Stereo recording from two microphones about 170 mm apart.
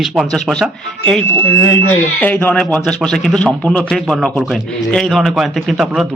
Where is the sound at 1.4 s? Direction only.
15° left (ahead or behind); by 6.1 s centre (ahead or behind).